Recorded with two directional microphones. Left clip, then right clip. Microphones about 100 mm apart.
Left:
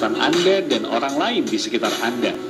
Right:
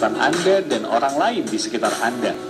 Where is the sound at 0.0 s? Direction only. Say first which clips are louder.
Even; 25° left (ahead or behind).